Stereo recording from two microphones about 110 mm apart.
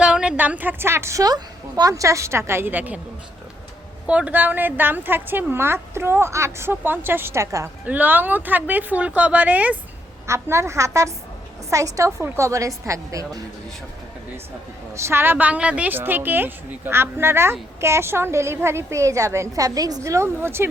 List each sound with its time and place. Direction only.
0.0 s speech: 10° right (ahead or behind)
4.0 s speech: 10° right (ahead or behind); by 7.7 s 25° right (ahead or behind)
7.9 s speech: 15° right (ahead or behind)
10.2 s speech: 25° right (ahead or behind)
14.9 s speech: 25° right (ahead or behind)